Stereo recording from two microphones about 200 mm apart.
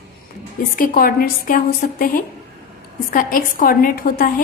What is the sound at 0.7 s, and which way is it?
A woman's voice, 45° left (ahead or behind).